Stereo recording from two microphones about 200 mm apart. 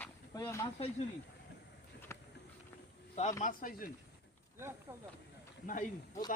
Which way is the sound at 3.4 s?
45° left (ahead or behind).